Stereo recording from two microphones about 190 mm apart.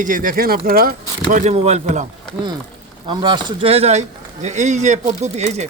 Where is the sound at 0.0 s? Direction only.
45° right (ahead or behind).